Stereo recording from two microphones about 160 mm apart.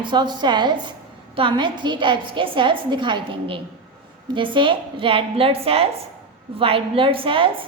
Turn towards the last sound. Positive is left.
turn(degrees=-30)  # may be behind; listen again after turning